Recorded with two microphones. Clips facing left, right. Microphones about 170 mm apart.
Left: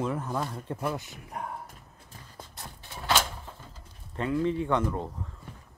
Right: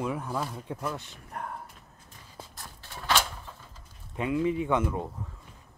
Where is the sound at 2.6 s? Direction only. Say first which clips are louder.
Left 3 dB; 15° left (ahead or behind).